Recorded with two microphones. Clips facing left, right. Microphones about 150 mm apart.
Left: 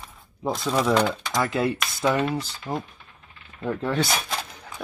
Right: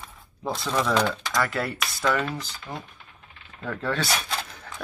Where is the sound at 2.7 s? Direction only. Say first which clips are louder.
Left 7 dB; 35° left (ahead or behind).